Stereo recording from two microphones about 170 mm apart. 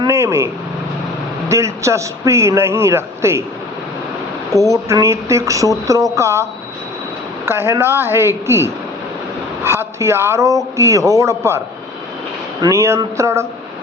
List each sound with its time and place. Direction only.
0.0 s vehicle: 15° right (ahead or behind)
1.5 s a man's voice: 15° right (ahead or behind)
4.6 s a man's voice: 20° right (ahead or behind)
12.6 s a man's voice: 15° right (ahead or behind)